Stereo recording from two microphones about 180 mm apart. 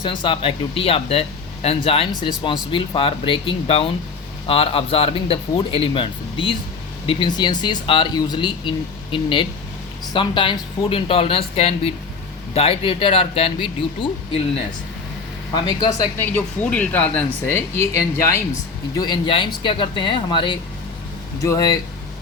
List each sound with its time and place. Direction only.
0.0 s speech: 25° left (ahead or behind)
15.5 s speech: 25° left (ahead or behind)
16.0 s speech: 10° left (ahead or behind)